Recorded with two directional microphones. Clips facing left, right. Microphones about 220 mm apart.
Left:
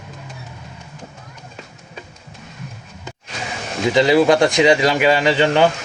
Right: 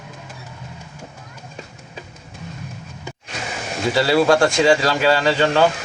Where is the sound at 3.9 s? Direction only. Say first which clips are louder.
Left 2 dB; 20° left (ahead or behind).